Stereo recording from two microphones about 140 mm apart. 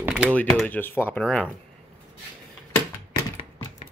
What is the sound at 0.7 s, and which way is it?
Speech, 15° left (ahead or behind).